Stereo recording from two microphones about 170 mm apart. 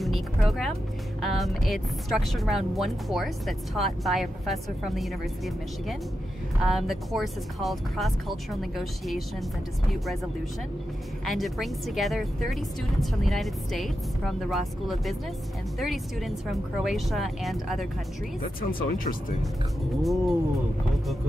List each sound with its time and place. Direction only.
0.0 s speech: centre (ahead or behind)
11.2 s speech: centre (ahead or behind)
18.7 s speech: 55° left (ahead or behind)
20.0 s speech: centre (ahead or behind)